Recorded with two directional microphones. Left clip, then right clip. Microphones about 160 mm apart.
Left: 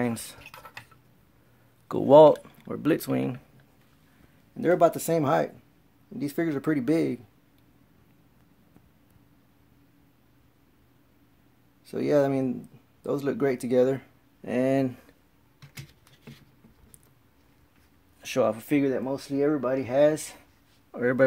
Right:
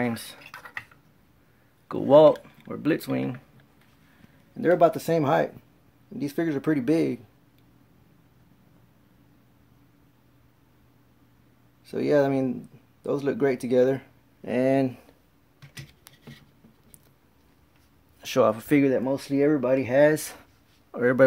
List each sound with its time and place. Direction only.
0.0 s speech: 10° left (ahead or behind)
1.9 s speech: 20° left (ahead or behind)
4.6 s speech: centre (ahead or behind)
11.8 s speech: 5° left (ahead or behind)
18.2 s speech: 15° right (ahead or behind)
18.8 s speech: 30° right (ahead or behind)
20.9 s speech: 10° right (ahead or behind)